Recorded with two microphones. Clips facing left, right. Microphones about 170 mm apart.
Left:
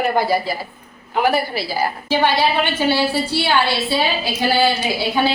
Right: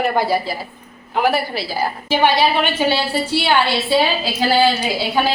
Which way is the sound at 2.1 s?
15° right (ahead or behind).